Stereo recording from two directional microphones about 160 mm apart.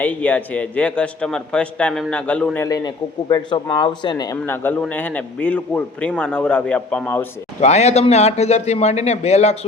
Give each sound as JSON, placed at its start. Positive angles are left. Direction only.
{"t": 0.0, "sound": "a man's voice", "side_deg": 10}
{"t": 2.6, "sound": "a man's voice", "side_deg": 25}
{"t": 4.4, "sound": "a man's voice", "side_deg": 15}
{"t": 7.6, "sound": "speech", "side_deg": 45}